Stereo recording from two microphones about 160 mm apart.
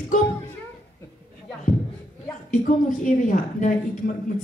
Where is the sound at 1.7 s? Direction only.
60° left (ahead or behind).